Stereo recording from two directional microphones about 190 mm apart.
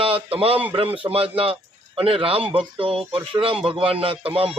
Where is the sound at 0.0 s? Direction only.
30° right (ahead or behind).